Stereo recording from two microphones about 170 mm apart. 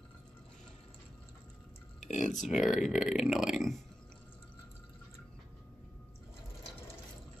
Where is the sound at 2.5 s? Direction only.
5° right (ahead or behind).